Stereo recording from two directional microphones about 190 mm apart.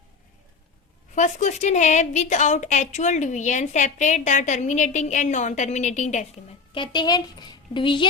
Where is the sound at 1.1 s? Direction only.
40° left (ahead or behind).